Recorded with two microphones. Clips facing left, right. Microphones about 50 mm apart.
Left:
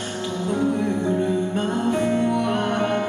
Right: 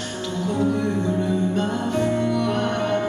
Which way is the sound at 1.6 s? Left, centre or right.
Centre.